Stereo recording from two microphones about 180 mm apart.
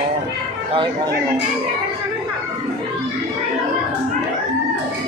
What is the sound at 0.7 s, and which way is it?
Speech, 25° right (ahead or behind).